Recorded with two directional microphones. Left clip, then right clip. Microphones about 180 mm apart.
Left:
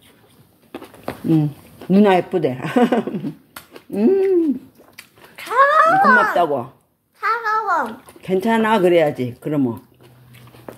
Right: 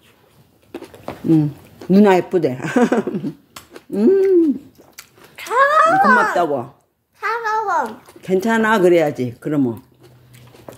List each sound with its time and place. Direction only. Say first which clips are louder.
1.3 s a woman's voice: right 3 dB; 20° right (ahead or behind)
3.7 s a sound: right 2 dB; 25° right (ahead or behind)
7.2 s a child's voice: left 1 dB; 30° right (ahead or behind)